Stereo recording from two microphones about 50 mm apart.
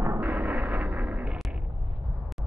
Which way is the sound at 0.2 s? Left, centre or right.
Right.